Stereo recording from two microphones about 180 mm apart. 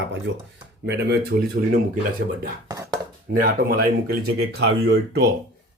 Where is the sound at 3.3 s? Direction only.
55° right (ahead or behind); by 5.2 s 70° right (ahead or behind).